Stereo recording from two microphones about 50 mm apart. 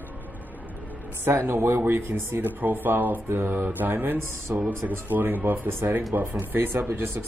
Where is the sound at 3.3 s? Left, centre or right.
Right.